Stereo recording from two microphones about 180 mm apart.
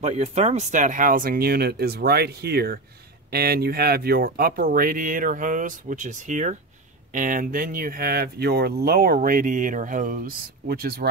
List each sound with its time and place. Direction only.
0.0 s speech: 40° right (ahead or behind); by 11.1 s 60° right (ahead or behind)